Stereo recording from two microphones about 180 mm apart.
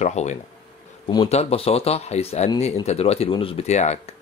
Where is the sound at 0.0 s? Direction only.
40° left (ahead or behind).